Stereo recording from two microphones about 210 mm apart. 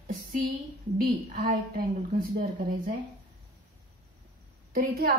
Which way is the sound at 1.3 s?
45° right (ahead or behind).